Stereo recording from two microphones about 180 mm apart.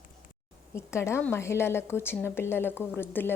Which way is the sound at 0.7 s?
15° left (ahead or behind).